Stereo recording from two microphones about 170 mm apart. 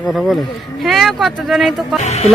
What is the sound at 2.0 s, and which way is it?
Speech, 40° left (ahead or behind).